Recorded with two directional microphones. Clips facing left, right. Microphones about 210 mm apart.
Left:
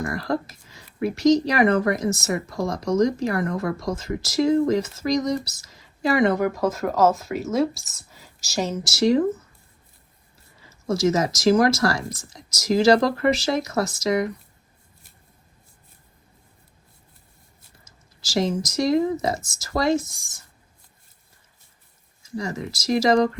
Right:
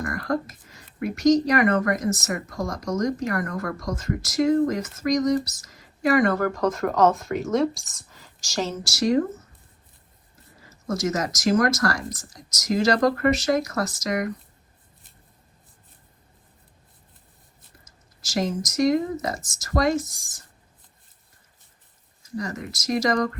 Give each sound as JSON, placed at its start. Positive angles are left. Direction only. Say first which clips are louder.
{"t": 0.0, "sound": "speech", "louder": "left 1 dB", "side_deg": 30}
{"t": 6.5, "sound": "speech", "louder": "even", "side_deg": 5}
{"t": 8.8, "sound": "speech", "louder": "left 4 dB", "side_deg": 25}
{"t": 10.7, "sound": "speech", "louder": "left 5 dB", "side_deg": 30}
{"t": 17.8, "sound": "speech", "louder": "left 6 dB", "side_deg": 30}
{"t": 22.2, "sound": "speech", "louder": "left 2 dB", "side_deg": 30}